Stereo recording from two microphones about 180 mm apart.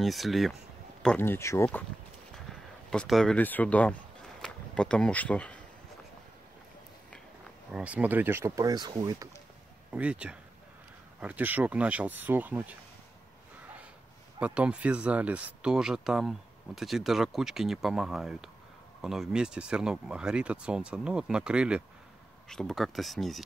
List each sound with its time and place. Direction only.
0.0 s speech: centre (ahead or behind)
1.0 s speech: 10° left (ahead or behind)
2.9 s speech: centre (ahead or behind)
7.7 s speech: 5° right (ahead or behind)
9.8 s speech: 5° right (ahead or behind)
14.4 s speech: 5° right (ahead or behind)